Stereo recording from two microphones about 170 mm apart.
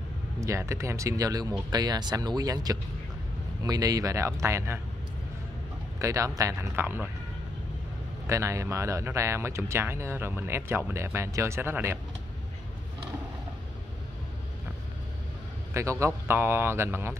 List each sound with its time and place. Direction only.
0.4 s speech: 15° right (ahead or behind)
5.9 s speech: 20° right (ahead or behind)
8.3 s speech: 15° right (ahead or behind)
15.7 s speech: 15° right (ahead or behind)